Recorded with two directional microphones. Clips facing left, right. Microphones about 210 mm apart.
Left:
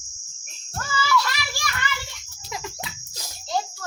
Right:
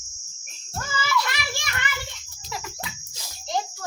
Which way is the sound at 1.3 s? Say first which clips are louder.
Left 1 dB; 20° right (ahead or behind).